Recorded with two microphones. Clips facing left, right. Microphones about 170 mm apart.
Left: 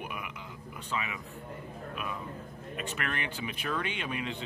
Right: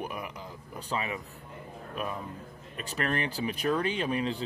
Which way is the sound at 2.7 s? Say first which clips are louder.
Right 5 dB; 35° right (ahead or behind).